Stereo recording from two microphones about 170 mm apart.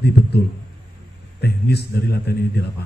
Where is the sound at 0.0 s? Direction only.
75° left (ahead or behind).